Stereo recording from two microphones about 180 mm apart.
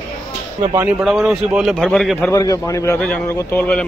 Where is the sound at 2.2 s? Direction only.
20° left (ahead or behind).